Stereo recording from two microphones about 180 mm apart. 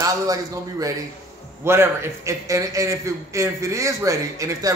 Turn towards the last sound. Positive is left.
turn(degrees=-15)  # may be behind; listen again after turning